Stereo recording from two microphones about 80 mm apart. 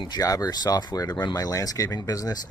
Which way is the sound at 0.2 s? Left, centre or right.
Left.